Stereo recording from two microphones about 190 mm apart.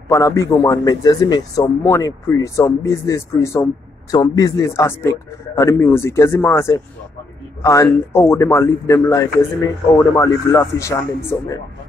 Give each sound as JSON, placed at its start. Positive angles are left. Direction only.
{"t": 0.1, "sound": "a man's voice", "side_deg": 15}